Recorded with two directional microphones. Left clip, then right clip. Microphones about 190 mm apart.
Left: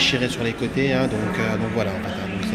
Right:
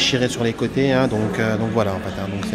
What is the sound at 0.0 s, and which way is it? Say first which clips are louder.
Speech: right 2 dB; 30° right (ahead or behind).